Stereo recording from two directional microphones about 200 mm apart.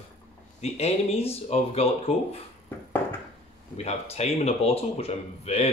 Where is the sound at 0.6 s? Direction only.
30° left (ahead or behind).